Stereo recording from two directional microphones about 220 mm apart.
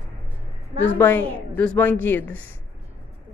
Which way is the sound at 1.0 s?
10° left (ahead or behind).